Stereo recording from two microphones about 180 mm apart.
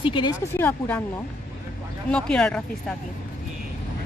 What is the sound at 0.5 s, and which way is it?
Speech, 10° left (ahead or behind).